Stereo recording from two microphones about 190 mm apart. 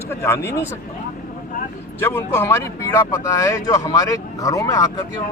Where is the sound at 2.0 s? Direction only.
10° left (ahead or behind).